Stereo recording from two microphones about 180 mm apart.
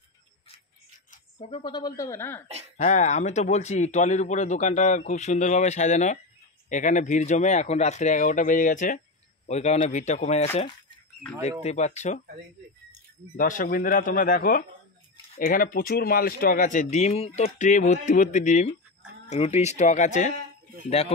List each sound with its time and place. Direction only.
1.1 s a woman's voice: 30° left (ahead or behind); by 2.4 s 15° left (ahead or behind)
2.8 s speech: 40° left (ahead or behind)
13.4 s speech: 50° left (ahead or behind)